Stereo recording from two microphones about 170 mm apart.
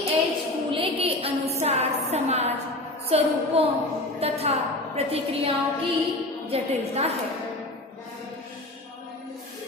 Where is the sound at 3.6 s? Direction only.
35° right (ahead or behind).